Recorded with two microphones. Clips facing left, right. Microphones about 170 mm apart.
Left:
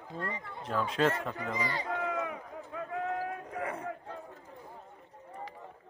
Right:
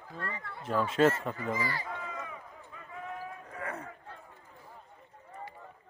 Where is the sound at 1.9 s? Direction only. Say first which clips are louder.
Left 7 dB; 75° left (ahead or behind).